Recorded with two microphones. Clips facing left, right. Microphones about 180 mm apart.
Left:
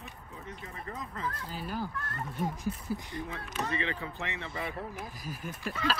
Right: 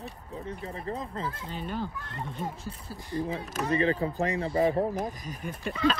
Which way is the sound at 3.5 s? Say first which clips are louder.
Right 8 dB; 40° right (ahead or behind).